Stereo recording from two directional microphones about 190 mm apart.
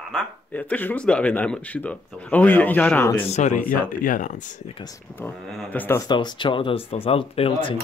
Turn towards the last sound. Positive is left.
turn(degrees=30)  # may be behind; listen again after turning